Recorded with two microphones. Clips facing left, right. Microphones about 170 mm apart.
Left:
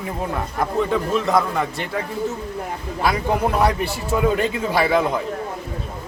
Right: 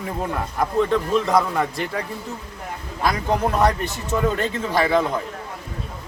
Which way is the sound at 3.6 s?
10° left (ahead or behind).